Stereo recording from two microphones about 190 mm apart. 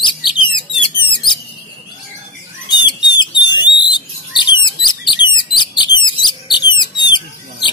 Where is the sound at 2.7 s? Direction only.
25° left (ahead or behind).